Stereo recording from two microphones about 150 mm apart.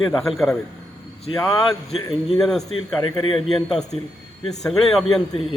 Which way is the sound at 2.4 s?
Centre (ahead or behind).